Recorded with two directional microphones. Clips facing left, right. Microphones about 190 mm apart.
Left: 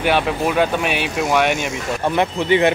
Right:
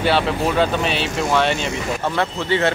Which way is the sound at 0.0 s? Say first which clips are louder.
Even; 15° left (ahead or behind).